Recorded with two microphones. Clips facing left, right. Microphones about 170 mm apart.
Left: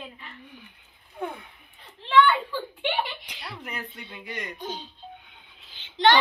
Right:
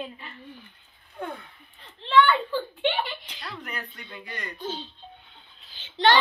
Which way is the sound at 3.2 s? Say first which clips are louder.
Even; 15° left (ahead or behind).